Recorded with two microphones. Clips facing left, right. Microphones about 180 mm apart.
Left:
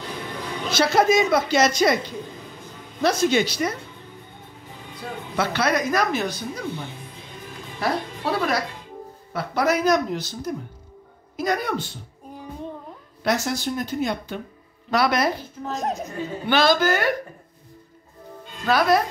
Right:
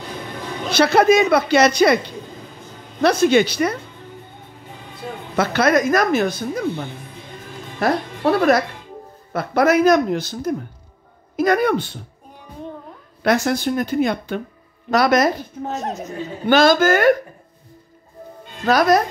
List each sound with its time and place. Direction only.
0.7 s a woman's voice: 65° right (ahead or behind)
3.0 s a woman's voice: 60° right (ahead or behind)
5.3 s a woman's voice: 45° right (ahead or behind)
7.8 s a woman's voice: 55° right (ahead or behind)
13.2 s a woman's voice: 55° right (ahead or behind)
14.9 s a woman's voice: 45° right (ahead or behind)
15.8 s a woman's voice: 10° left (ahead or behind)
16.4 s a woman's voice: 45° right (ahead or behind)
18.7 s speech: 40° right (ahead or behind)